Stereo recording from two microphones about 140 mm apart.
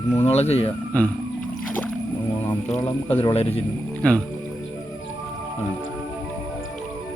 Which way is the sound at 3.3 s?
45° left (ahead or behind).